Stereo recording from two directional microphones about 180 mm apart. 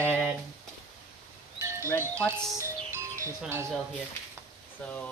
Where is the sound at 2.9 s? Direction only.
15° right (ahead or behind).